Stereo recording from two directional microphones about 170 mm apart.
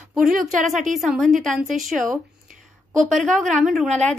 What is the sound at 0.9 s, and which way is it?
A woman's voice, centre (ahead or behind).